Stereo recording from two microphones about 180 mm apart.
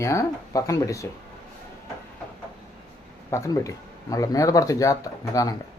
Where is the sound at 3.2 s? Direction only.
20° left (ahead or behind).